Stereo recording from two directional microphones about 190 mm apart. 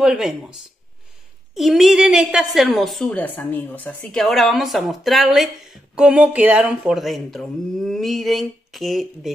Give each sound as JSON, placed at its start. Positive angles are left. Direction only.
{"t": 0.0, "sound": "a woman's voice", "side_deg": -5}